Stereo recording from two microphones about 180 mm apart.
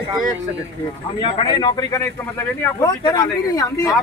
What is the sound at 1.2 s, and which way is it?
Speech, 30° left (ahead or behind).